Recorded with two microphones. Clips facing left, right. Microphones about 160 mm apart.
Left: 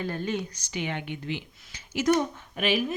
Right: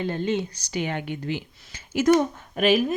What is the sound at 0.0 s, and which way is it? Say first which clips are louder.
A woman's voice: right 5 dB; 25° right (ahead or behind).